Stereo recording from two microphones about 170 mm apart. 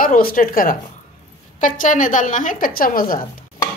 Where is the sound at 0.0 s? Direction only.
55° left (ahead or behind).